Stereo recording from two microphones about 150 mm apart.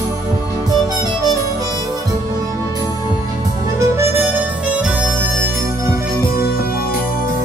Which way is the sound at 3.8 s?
15° right (ahead or behind).